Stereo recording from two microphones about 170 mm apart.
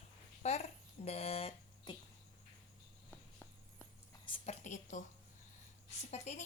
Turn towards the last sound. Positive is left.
turn(degrees=40)  # may be behind; listen again after turning